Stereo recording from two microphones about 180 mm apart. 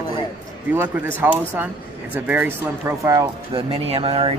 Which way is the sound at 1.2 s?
10° right (ahead or behind).